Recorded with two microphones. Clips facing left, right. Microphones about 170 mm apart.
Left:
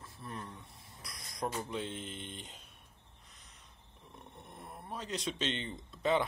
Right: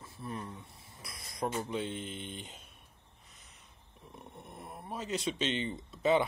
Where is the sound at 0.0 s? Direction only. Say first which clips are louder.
Right 4 dB; 5° right (ahead or behind).